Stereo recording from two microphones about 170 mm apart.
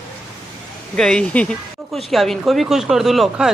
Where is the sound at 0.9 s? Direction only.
5° left (ahead or behind).